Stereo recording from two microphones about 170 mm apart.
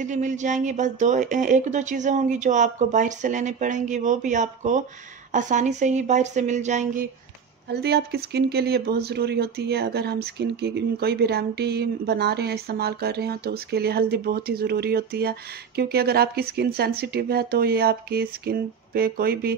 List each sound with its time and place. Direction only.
0.0 s speech: 45° right (ahead or behind)
7.8 s speech: 70° right (ahead or behind)